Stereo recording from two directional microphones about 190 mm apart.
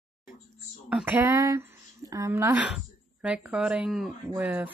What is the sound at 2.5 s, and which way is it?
Speech, 5° right (ahead or behind).